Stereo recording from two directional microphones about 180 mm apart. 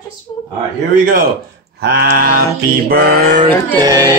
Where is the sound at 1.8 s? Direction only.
65° right (ahead or behind).